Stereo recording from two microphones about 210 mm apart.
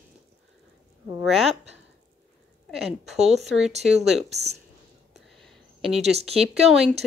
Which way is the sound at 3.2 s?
30° right (ahead or behind).